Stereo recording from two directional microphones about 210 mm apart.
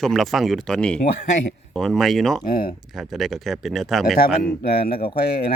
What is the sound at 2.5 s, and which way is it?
Speech, 45° left (ahead or behind).